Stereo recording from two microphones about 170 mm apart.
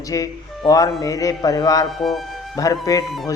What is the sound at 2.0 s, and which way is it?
Speech, centre (ahead or behind).